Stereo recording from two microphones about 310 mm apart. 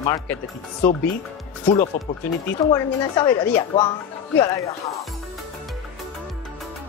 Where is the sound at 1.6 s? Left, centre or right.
Left.